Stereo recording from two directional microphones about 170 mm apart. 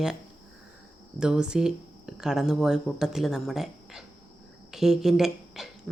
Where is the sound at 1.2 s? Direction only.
5° right (ahead or behind).